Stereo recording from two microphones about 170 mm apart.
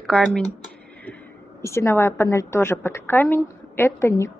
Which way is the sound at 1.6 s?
15° left (ahead or behind).